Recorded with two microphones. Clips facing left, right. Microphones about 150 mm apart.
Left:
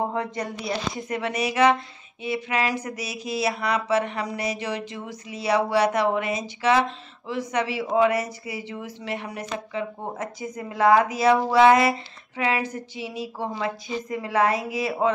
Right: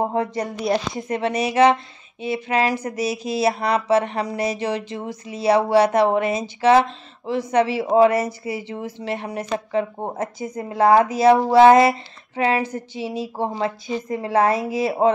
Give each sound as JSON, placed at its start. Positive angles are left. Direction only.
{"t": 0.9, "sound": "speech", "side_deg": -25}